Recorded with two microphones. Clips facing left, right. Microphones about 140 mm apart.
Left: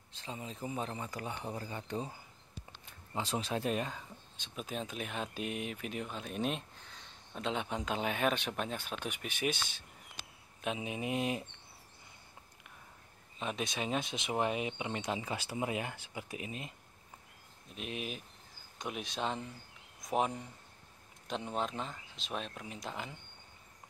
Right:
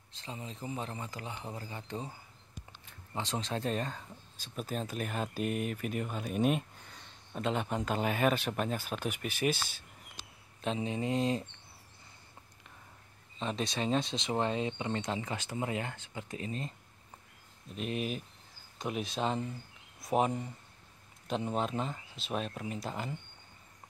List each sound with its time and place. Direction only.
0.7 s speech: 15° left (ahead or behind)
3.1 s speech: 10° left (ahead or behind)
4.6 s speech: centre (ahead or behind)
10.6 s speech: 10° left (ahead or behind)
13.4 s speech: 5° left (ahead or behind)